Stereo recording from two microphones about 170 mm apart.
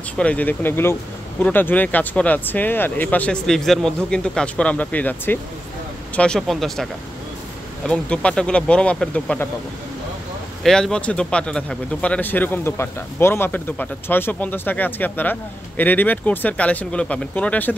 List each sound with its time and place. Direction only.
0.2 s speech: 10° left (ahead or behind)
10.6 s speech: 5° left (ahead or behind)